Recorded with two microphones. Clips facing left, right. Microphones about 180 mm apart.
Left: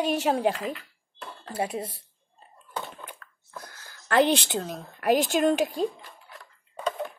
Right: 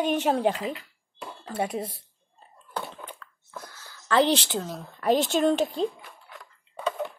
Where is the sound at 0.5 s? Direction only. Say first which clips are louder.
Right 1 dB; 10° right (ahead or behind).